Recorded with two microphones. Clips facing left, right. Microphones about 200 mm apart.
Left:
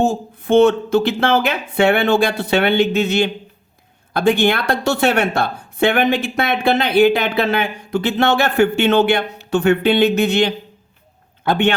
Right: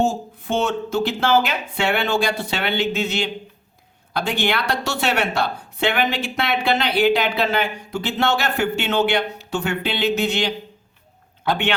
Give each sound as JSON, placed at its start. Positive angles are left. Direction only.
{"t": 0.0, "sound": "speech", "side_deg": 55}